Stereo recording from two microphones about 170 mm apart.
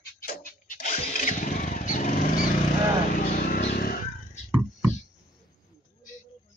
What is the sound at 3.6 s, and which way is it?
Vehicle, 70° left (ahead or behind).